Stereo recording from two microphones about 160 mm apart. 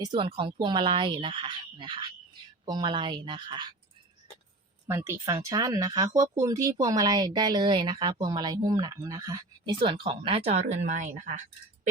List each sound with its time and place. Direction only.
0.0 s speech: 30° right (ahead or behind)
4.9 s a woman's voice: 15° right (ahead or behind)
9.8 s speech: 35° right (ahead or behind); by 11.4 s 50° right (ahead or behind)